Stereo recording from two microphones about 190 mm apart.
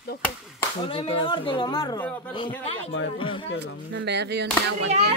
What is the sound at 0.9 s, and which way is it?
A man's voice, 30° left (ahead or behind).